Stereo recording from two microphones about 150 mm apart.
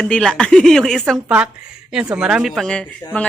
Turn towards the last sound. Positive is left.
turn(degrees=5)  # may be behind; listen again after turning